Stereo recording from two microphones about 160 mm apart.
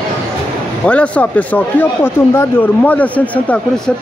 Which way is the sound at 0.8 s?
10° left (ahead or behind).